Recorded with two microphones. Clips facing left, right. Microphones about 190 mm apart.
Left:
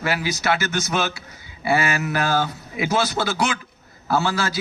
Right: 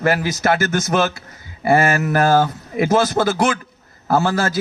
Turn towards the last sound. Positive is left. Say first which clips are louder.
# right 4 dB
turn(degrees=-50)  # may be behind; listen again after turning